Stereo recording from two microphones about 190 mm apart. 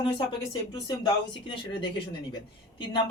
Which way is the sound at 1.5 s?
25° left (ahead or behind).